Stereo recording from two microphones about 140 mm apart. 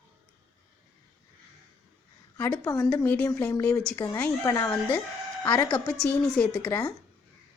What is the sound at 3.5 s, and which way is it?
A woman's voice, 20° left (ahead or behind).